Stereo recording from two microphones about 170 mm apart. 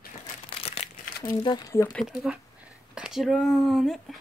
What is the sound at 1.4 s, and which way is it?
Speech, 25° left (ahead or behind).